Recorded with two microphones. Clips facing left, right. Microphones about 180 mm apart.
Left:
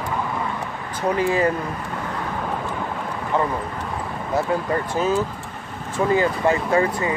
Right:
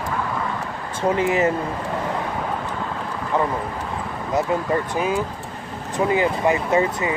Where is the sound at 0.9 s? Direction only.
25° right (ahead or behind).